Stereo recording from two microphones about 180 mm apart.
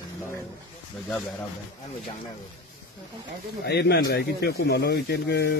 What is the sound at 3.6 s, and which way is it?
Speech, 65° left (ahead or behind).